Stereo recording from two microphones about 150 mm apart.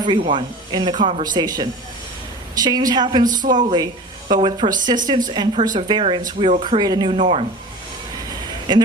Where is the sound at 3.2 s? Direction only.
60° right (ahead or behind).